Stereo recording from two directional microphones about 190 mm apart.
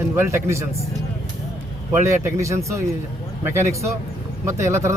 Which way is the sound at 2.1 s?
15° right (ahead or behind).